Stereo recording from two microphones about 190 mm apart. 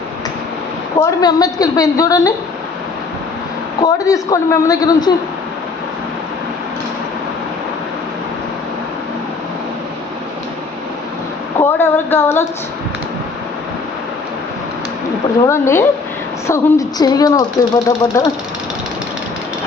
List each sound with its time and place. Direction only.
1.0 s speech: 20° left (ahead or behind)
3.8 s speech: 20° left (ahead or behind)
11.6 s speech: 10° left (ahead or behind)
15.4 s speech: 15° left (ahead or behind)